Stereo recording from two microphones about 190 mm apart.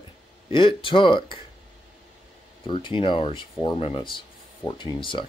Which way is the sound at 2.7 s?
25° left (ahead or behind).